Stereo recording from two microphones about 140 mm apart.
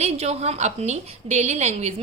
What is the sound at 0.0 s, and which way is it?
A woman's voice, 50° right (ahead or behind).